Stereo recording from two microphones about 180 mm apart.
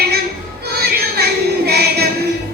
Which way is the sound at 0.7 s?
60° right (ahead or behind).